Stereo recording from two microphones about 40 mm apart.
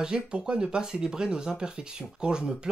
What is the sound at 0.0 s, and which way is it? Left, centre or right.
Speech, right.